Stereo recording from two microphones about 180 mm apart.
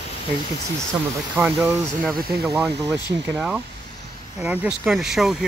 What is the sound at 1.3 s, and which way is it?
Speech, 5° right (ahead or behind).